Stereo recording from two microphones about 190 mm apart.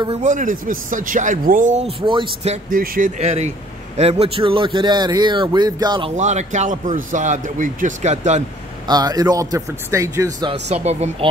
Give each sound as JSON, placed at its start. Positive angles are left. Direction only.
{"t": 0.1, "sound": "speech", "side_deg": -40}
{"t": 2.7, "sound": "a man's voice", "side_deg": -50}
{"t": 6.1, "sound": "speech", "side_deg": -40}
{"t": 8.8, "sound": "a man's voice", "side_deg": -20}
{"t": 10.7, "sound": "speech", "side_deg": -35}